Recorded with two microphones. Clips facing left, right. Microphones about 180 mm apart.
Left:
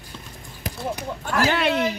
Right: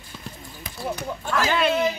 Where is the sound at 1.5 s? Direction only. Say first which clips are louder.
Right 2 dB; 70° left (ahead or behind).